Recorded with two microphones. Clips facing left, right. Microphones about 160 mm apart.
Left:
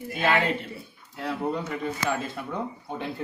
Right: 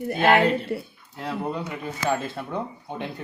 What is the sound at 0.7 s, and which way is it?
Speech, 70° right (ahead or behind).